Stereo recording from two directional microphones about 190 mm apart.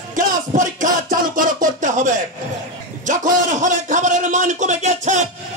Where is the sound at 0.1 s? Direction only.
40° right (ahead or behind).